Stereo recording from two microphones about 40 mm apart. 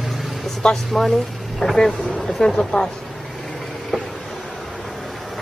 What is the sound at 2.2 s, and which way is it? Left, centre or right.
Vehicle, centre.